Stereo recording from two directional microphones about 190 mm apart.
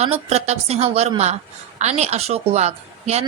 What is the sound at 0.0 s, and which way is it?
A woman's voice, 35° right (ahead or behind).